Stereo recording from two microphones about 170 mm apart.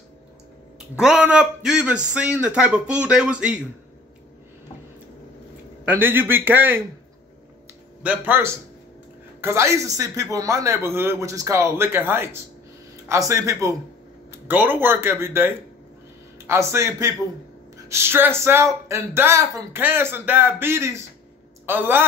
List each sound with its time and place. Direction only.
0.7 s a man's voice: 5° right (ahead or behind)
5.9 s speech: 10° right (ahead or behind)
8.0 s a man's voice: 10° right (ahead or behind)